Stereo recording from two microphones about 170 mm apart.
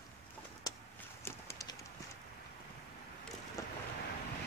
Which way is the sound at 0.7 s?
20° left (ahead or behind).